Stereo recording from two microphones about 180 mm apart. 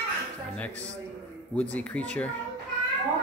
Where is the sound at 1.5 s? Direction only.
5° left (ahead or behind).